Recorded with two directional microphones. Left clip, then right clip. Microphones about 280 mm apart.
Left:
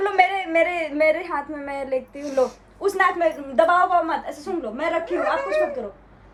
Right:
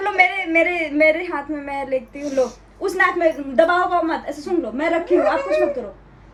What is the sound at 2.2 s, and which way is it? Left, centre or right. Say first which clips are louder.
Speech: right 1 dB; left.